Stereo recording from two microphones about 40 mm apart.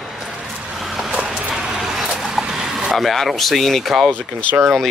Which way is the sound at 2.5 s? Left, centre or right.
Centre.